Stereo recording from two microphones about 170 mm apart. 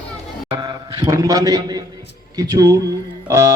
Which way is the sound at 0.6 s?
25° right (ahead or behind).